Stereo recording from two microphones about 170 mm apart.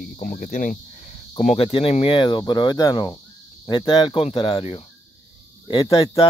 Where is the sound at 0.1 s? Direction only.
55° left (ahead or behind).